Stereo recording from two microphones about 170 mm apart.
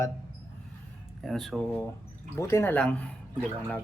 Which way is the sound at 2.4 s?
15° left (ahead or behind).